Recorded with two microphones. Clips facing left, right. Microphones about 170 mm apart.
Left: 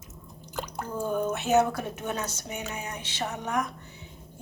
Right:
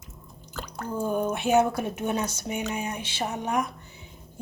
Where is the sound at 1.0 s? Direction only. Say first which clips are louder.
Right 2 dB; 10° right (ahead or behind).